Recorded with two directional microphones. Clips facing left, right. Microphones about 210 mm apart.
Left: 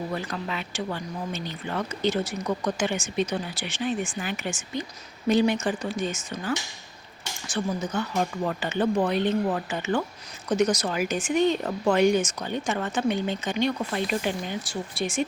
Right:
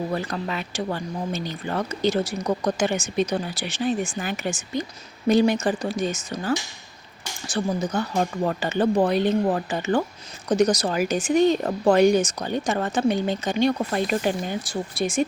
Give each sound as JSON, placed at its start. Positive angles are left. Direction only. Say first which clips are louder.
{"t": 0.1, "sound": "speech", "louder": "right 4 dB", "side_deg": -45}